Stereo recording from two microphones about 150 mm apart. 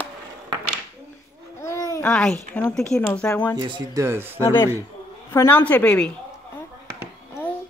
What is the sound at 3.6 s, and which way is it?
Speech, 30° right (ahead or behind).